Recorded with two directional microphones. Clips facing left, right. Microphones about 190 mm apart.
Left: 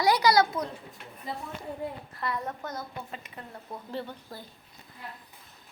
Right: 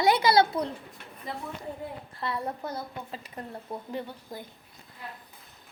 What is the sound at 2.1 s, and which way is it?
A woman's voice, 30° right (ahead or behind).